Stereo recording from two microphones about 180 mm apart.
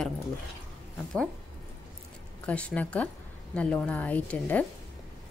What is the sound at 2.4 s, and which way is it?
A woman's voice, 5° left (ahead or behind).